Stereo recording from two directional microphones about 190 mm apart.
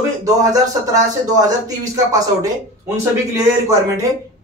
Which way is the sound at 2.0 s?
20° right (ahead or behind).